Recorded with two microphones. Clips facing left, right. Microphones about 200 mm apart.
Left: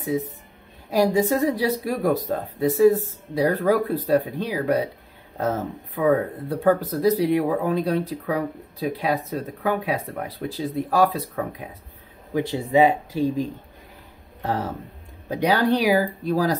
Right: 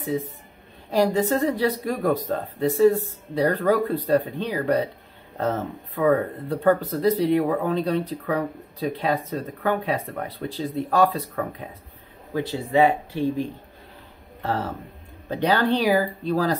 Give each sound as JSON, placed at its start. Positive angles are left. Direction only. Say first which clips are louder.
{"t": 0.8, "sound": "speech", "louder": "left 1 dB", "side_deg": 10}
{"t": 13.1, "sound": "speech", "louder": "left 1 dB", "side_deg": 40}
{"t": 14.4, "sound": "speech", "louder": "left 1 dB", "side_deg": 15}